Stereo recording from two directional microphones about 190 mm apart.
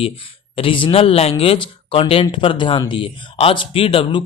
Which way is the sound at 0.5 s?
25° left (ahead or behind).